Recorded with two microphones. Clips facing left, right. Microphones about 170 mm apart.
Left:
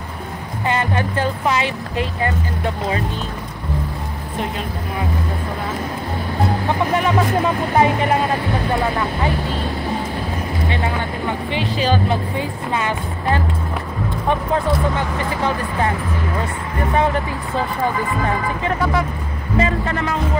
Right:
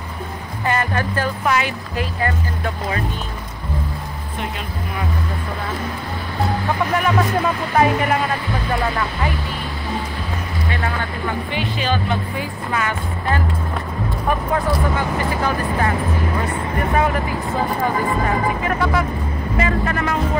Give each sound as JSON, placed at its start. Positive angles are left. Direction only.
{"t": 0.7, "sound": "speech", "side_deg": 20}
{"t": 6.9, "sound": "speech", "side_deg": 25}
{"t": 10.7, "sound": "speech", "side_deg": 20}
{"t": 11.7, "sound": "speech", "side_deg": 35}
{"t": 12.4, "sound": "speech", "side_deg": 25}
{"t": 14.5, "sound": "speech", "side_deg": 25}
{"t": 19.6, "sound": "speech", "side_deg": 30}